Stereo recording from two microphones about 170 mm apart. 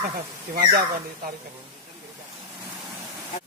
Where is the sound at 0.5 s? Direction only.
60° right (ahead or behind).